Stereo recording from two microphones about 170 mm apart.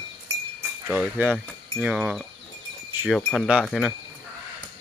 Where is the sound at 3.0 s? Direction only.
5° right (ahead or behind).